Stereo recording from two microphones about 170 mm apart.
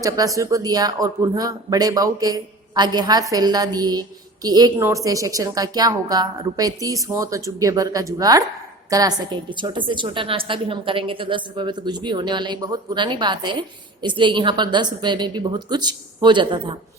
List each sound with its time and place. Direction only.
0.0 s a woman's voice: 20° right (ahead or behind)